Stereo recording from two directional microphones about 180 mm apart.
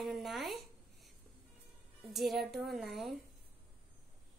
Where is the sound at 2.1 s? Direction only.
Centre (ahead or behind).